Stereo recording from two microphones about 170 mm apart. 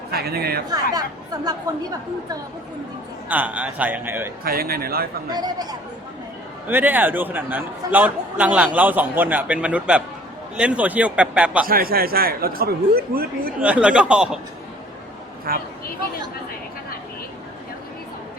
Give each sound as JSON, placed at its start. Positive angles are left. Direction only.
{"t": 0.1, "sound": "speech", "side_deg": -70}
{"t": 0.7, "sound": "speech", "side_deg": -20}
{"t": 3.2, "sound": "a man's voice", "side_deg": -10}
{"t": 4.4, "sound": "a man's voice", "side_deg": -60}
{"t": 5.3, "sound": "speech", "side_deg": -25}
{"t": 6.7, "sound": "a man's voice", "side_deg": -10}
{"t": 11.6, "sound": "a man's voice", "side_deg": -60}
{"t": 13.6, "sound": "a man's voice", "side_deg": -5}
{"t": 15.5, "sound": "a man's voice", "side_deg": -60}